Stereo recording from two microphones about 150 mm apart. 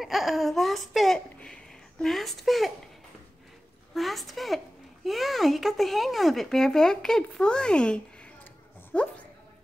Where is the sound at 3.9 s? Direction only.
Centre (ahead or behind).